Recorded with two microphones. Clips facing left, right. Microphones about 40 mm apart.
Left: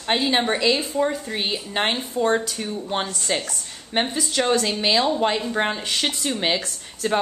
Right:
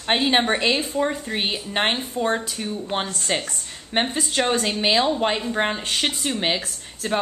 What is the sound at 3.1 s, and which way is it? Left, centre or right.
Speech, centre.